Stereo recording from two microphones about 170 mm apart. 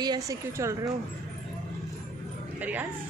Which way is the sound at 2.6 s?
10° right (ahead or behind).